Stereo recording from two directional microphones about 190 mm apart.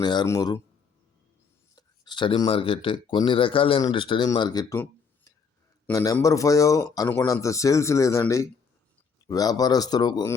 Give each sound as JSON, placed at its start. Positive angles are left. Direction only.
{"t": 0.0, "sound": "speech", "side_deg": 20}
{"t": 1.7, "sound": "speech", "side_deg": 25}
{"t": 5.9, "sound": "speech", "side_deg": 15}